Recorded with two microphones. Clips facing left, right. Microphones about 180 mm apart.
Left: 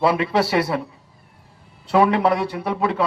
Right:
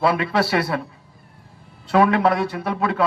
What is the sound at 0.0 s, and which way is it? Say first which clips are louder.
Speech: left 1 dB; 25° left (ahead or behind).